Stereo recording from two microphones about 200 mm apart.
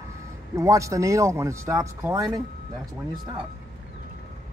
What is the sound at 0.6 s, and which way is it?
Speech, 15° right (ahead or behind).